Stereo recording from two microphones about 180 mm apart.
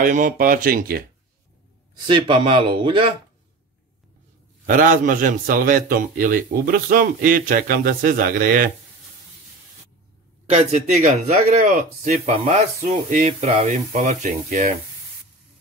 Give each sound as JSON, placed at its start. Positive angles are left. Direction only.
{"t": 0.0, "sound": "a man's voice", "side_deg": -45}
{"t": 2.0, "sound": "speech", "side_deg": -30}
{"t": 4.6, "sound": "a man's voice", "side_deg": -45}
{"t": 10.5, "sound": "a man's voice", "side_deg": -40}